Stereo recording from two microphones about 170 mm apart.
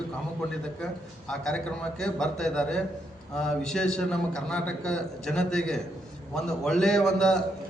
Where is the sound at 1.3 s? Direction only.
5° left (ahead or behind).